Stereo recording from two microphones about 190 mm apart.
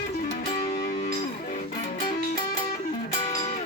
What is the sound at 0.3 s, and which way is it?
Music, 45° left (ahead or behind).